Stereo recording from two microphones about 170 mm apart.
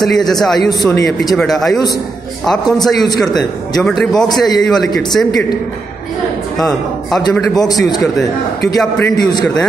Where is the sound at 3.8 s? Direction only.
5° left (ahead or behind).